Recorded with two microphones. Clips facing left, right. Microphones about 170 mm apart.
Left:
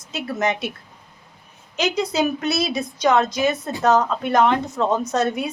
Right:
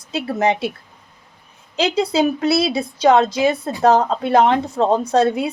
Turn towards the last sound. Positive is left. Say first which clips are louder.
# right 5 dB
turn(degrees=-30)  # may be behind; listen again after turning